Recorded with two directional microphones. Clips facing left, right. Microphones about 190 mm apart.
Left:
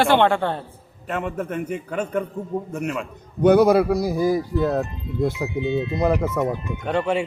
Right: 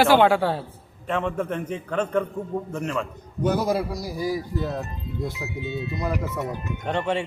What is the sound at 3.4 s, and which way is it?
A man's voice, 65° left (ahead or behind).